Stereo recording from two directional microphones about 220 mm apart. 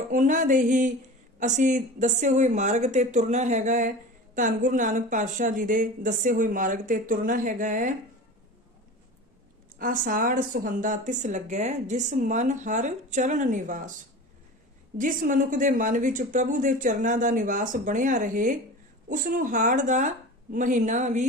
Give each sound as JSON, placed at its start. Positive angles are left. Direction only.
{"t": 0.1, "sound": "speech", "side_deg": -35}
{"t": 9.7, "sound": "speech", "side_deg": -40}
{"t": 14.9, "sound": "speech", "side_deg": -35}